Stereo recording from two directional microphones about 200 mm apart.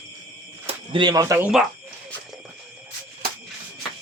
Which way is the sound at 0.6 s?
25° right (ahead or behind).